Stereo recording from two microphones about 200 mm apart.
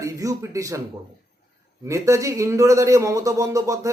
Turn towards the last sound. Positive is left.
turn(degrees=-15)  # may be behind; listen again after turning